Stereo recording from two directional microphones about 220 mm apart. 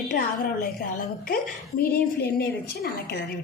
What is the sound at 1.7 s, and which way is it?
A woman's voice, 45° left (ahead or behind).